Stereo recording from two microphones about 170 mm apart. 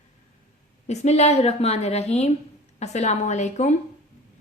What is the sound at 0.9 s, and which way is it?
A woman's voice, 40° left (ahead or behind).